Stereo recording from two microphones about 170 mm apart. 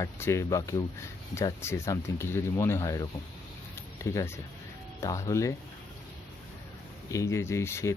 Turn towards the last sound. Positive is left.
turn(degrees=15)  # may be behind; listen again after turning